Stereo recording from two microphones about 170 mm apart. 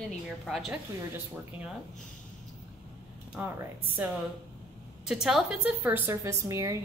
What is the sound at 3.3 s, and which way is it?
A woman's voice, 10° right (ahead or behind).